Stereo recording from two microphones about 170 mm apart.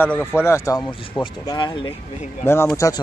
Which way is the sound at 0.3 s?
15° left (ahead or behind).